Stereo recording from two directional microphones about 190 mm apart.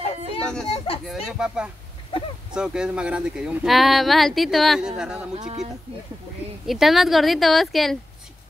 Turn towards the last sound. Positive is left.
turn(degrees=0)  # may be behind; listen again after turning